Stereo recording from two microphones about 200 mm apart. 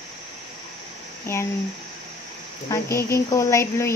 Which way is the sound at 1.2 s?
15° left (ahead or behind).